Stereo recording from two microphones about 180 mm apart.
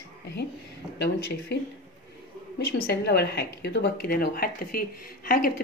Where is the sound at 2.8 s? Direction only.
65° left (ahead or behind).